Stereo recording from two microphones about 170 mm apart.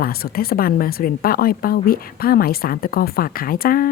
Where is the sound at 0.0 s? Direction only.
60° left (ahead or behind).